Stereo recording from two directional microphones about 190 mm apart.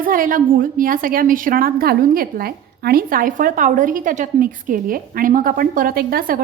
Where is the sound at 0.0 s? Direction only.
45° right (ahead or behind).